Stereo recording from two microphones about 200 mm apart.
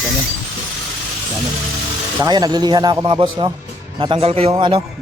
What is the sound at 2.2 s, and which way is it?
Speech, 20° right (ahead or behind).